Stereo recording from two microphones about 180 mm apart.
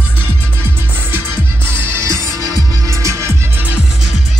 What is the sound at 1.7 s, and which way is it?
Music, 10° right (ahead or behind).